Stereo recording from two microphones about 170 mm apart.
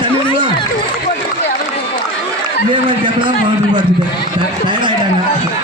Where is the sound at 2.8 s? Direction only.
30° right (ahead or behind).